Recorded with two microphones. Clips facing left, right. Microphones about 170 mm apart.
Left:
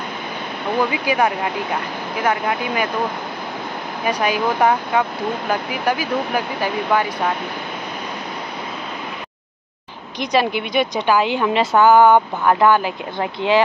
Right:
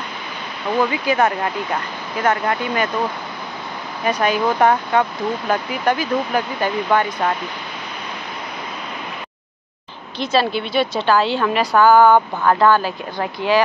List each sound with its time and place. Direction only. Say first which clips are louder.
1.0 s a woman's voice: right 1 dB; 10° left (ahead or behind)
4.0 s a woman's voice: right 1 dB; 10° left (ahead or behind)
10.1 s a woman's voice: even; 15° left (ahead or behind)